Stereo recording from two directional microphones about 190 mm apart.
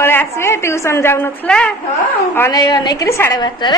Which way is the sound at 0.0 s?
10° left (ahead or behind).